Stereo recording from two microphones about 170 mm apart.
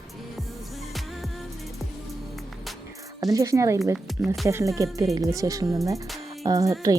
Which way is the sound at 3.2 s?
20° right (ahead or behind).